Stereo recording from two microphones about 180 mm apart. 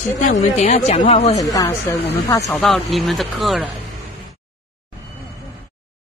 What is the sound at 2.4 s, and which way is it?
Speech, centre (ahead or behind).